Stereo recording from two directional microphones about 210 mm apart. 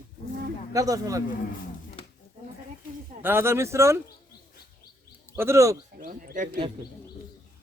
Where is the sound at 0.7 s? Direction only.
15° right (ahead or behind).